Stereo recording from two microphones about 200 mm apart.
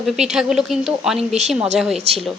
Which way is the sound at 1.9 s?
30° right (ahead or behind).